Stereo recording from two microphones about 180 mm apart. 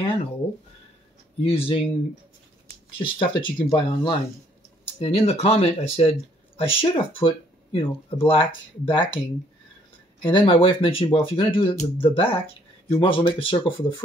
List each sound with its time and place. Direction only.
1.4 s speech: 30° left (ahead or behind)
2.9 s speech: 30° left (ahead or behind)
10.2 s speech: 30° left (ahead or behind)